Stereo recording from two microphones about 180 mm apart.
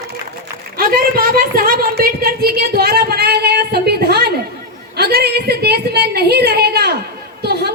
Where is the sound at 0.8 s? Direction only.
55° right (ahead or behind).